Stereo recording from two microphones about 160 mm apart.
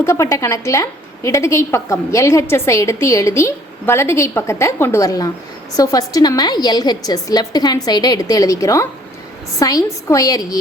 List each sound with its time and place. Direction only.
0.0 s a woman's voice: 20° left (ahead or behind)